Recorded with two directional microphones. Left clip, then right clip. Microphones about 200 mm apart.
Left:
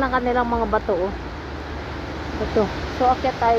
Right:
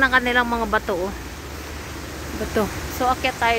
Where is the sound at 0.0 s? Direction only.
30° right (ahead or behind).